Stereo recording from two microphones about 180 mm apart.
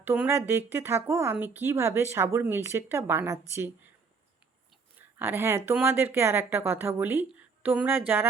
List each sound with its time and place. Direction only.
0.0 s a woman's voice: 10° right (ahead or behind)
5.2 s a woman's voice: 10° right (ahead or behind)